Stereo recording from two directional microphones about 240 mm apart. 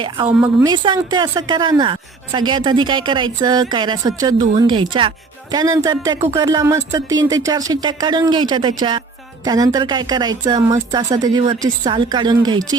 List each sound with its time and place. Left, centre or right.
0.3 s speech: centre
0.7 s a woman's voice: centre